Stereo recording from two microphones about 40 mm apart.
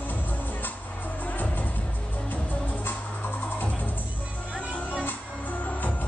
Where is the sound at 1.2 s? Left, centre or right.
Left.